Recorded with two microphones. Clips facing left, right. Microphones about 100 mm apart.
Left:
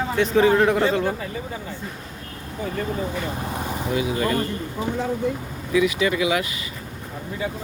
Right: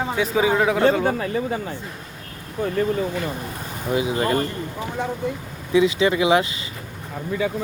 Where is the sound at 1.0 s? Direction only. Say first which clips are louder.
Right 5 dB; 65° right (ahead or behind).